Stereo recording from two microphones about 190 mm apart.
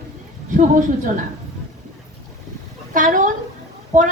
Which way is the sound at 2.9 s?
45° right (ahead or behind).